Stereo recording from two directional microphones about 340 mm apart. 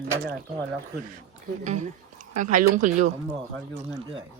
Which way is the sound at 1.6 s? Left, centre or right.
Right.